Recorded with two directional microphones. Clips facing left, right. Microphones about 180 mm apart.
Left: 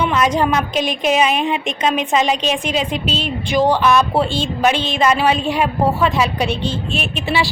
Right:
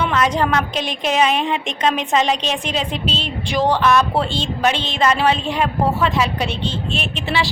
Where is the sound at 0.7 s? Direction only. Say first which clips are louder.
Left 4 dB; 30° right (ahead or behind).